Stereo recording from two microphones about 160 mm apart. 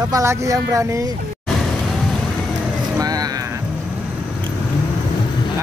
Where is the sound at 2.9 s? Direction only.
25° right (ahead or behind).